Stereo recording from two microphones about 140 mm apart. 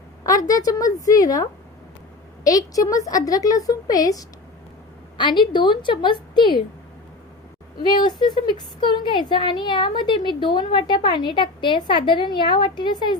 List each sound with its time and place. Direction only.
0.3 s a woman's voice: 25° left (ahead or behind)
7.8 s a woman's voice: 30° left (ahead or behind)